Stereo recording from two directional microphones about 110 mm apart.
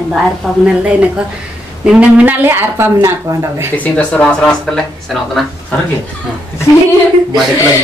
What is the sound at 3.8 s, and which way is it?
Speech, 15° left (ahead or behind).